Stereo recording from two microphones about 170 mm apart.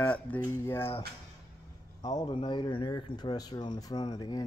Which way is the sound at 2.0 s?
20° left (ahead or behind).